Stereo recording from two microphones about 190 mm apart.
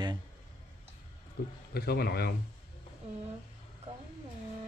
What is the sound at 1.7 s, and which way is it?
Speech, 55° left (ahead or behind).